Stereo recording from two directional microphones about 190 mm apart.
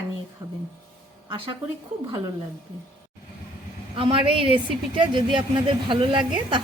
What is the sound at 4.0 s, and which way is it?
A woman's voice, 30° right (ahead or behind).